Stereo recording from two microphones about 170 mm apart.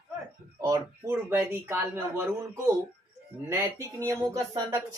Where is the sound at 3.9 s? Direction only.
15° right (ahead or behind).